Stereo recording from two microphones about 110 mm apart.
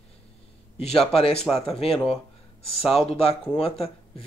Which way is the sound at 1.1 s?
60° left (ahead or behind).